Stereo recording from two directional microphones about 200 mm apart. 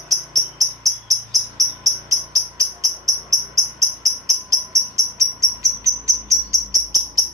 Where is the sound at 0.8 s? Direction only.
15° right (ahead or behind).